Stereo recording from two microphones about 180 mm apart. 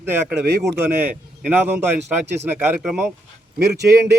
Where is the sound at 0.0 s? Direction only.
10° right (ahead or behind).